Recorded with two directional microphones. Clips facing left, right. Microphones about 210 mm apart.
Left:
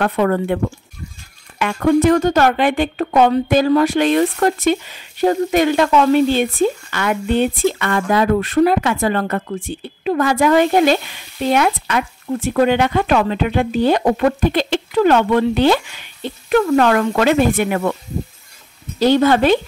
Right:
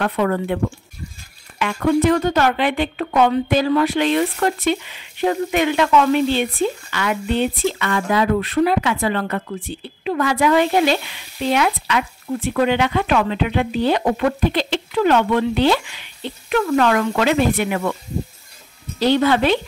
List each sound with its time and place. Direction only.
0.0 s speech: 50° left (ahead or behind)
1.6 s speech: 45° left (ahead or behind)
18.9 s speech: 45° left (ahead or behind)